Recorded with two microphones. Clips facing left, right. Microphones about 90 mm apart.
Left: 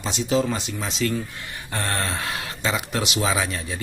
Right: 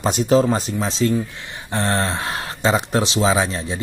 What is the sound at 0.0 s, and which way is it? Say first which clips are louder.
Speech: right 7 dB; 45° right (ahead or behind).